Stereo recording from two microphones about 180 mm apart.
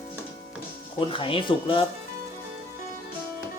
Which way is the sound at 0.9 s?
30° left (ahead or behind).